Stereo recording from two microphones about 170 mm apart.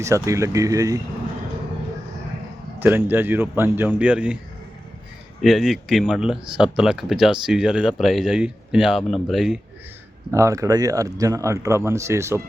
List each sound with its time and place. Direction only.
0.0 s speech: 15° right (ahead or behind)
2.7 s speech: 10° right (ahead or behind)
5.4 s speech: centre (ahead or behind)
10.3 s speech: 20° right (ahead or behind)